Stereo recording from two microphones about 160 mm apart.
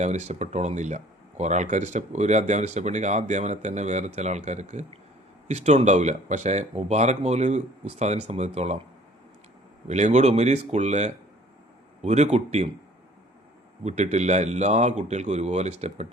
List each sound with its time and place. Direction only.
0.0 s speech: 45° right (ahead or behind)
9.8 s speech: 45° right (ahead or behind)
13.8 s speech: 45° right (ahead or behind)